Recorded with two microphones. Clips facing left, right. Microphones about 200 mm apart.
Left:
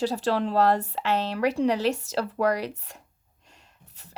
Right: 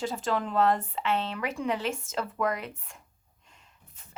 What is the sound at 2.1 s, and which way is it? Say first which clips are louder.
Speech: left 5 dB; 35° left (ahead or behind).